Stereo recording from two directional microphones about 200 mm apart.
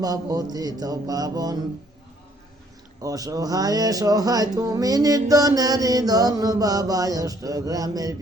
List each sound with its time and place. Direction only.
0.0 s mantra: 20° right (ahead or behind)
3.0 s mantra: 15° right (ahead or behind)